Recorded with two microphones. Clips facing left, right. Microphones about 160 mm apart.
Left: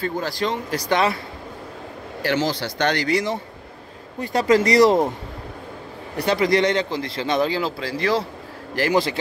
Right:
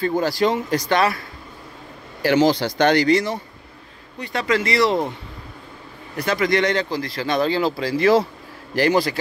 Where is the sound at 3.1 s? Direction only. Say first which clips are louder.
Right 3 dB; 15° left (ahead or behind).